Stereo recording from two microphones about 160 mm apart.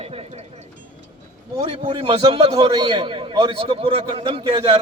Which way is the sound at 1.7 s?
35° right (ahead or behind).